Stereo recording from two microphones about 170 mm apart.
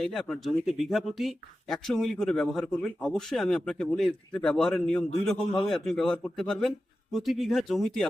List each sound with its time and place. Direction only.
0.0 s speech: centre (ahead or behind)